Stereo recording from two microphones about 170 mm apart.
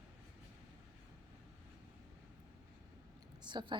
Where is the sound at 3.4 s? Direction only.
25° right (ahead or behind).